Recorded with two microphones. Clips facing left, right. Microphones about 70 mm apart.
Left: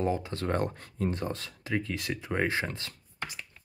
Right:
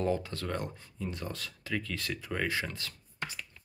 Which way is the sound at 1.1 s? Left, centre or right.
Left.